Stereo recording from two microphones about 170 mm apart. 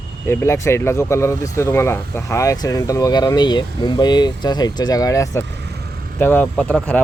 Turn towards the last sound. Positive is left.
turn(degrees=5)  # may be behind; listen again after turning